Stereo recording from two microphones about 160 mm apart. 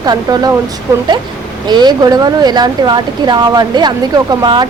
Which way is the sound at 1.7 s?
25° right (ahead or behind).